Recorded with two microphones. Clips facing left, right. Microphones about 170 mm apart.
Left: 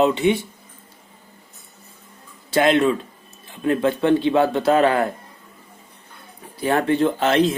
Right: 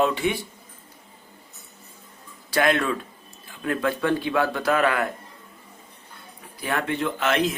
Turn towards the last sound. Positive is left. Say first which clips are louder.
# left 6 dB
turn(degrees=30)  # may be behind; listen again after turning